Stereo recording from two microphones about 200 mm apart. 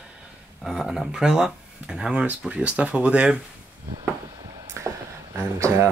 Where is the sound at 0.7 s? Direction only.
Centre (ahead or behind).